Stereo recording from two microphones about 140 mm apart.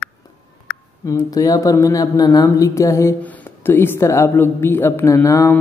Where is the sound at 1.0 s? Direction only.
25° left (ahead or behind).